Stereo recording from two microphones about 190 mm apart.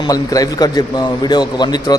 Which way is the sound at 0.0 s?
20° left (ahead or behind).